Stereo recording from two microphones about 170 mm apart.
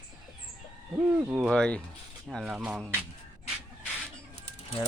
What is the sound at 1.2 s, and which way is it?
Speech, 15° right (ahead or behind).